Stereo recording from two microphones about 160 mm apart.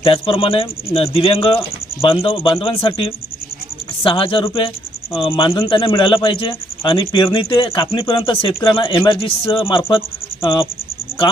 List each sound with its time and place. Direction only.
0.0 s speech: 35° left (ahead or behind)